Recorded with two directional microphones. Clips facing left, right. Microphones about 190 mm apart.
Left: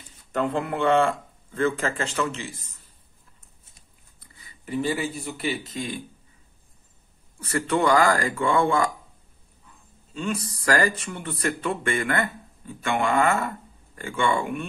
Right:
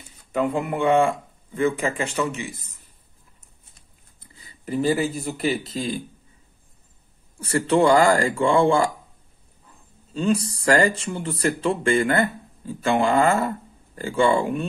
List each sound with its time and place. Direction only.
0.3 s speech: 10° right (ahead or behind)
4.3 s speech: 30° right (ahead or behind)
7.3 s speech: 30° right (ahead or behind)
10.1 s speech: 30° right (ahead or behind)